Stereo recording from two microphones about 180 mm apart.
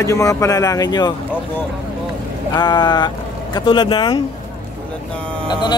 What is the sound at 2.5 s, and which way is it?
Speech, 25° left (ahead or behind).